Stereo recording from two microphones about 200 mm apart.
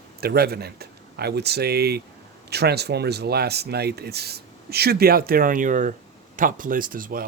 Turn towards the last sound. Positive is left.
turn(degrees=-45)  # may be behind; listen again after turning